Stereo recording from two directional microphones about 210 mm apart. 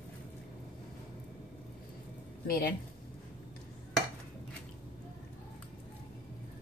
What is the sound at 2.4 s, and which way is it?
Speech, 45° left (ahead or behind).